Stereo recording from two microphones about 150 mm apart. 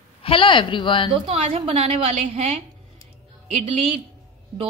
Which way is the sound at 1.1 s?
40° right (ahead or behind).